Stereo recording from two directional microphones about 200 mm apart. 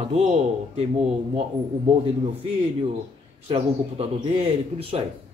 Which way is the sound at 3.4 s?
30° right (ahead or behind).